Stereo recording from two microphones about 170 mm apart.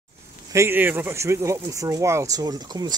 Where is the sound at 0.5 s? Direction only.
15° right (ahead or behind).